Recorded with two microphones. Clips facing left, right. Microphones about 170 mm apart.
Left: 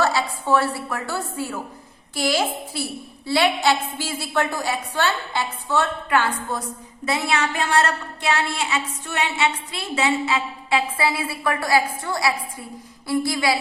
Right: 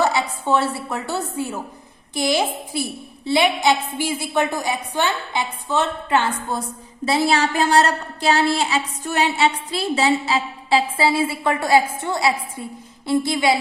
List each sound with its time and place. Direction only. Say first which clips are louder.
0.0 s a woman's voice: right 2 dB; 20° right (ahead or behind)